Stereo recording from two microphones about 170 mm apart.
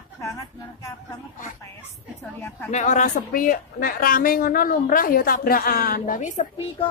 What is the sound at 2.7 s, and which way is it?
A woman's voice, 45° left (ahead or behind).